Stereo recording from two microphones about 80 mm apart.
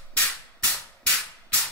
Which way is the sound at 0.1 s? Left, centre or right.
Centre.